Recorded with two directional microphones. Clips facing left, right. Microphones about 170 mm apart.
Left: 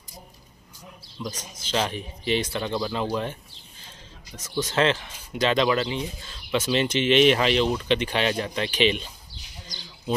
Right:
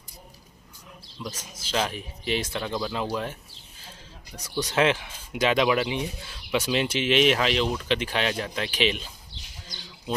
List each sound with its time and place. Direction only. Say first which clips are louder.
1.3 s speech: left 1 dB; 5° right (ahead or behind)
4.4 s speech: even; 15° right (ahead or behind)